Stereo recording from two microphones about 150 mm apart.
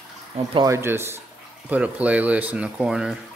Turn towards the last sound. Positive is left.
turn(degrees=-5)  # may be behind; listen again after turning